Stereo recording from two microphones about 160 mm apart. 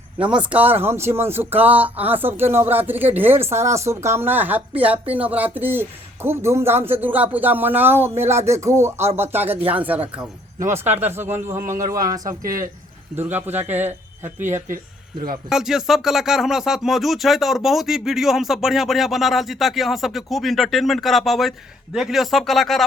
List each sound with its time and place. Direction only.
0.3 s a man's voice: 10° right (ahead or behind); by 12.4 s 25° right (ahead or behind)
13.1 s a man's voice: 10° right (ahead or behind)
15.4 s speech: 5° right (ahead or behind)